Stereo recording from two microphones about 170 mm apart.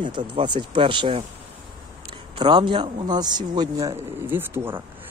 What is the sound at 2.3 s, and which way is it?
Speech, 30° right (ahead or behind).